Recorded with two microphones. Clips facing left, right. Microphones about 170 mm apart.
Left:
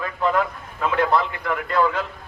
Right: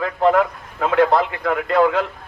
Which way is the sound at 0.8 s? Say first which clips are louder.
Right 4 dB; 55° right (ahead or behind).